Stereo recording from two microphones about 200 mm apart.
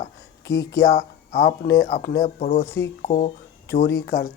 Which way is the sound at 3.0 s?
35° left (ahead or behind).